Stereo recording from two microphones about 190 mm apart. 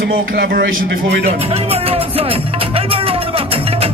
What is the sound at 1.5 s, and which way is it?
Music, 30° right (ahead or behind).